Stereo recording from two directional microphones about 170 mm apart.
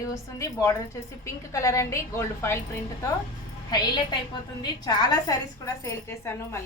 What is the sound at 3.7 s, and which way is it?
A woman's voice, 25° left (ahead or behind).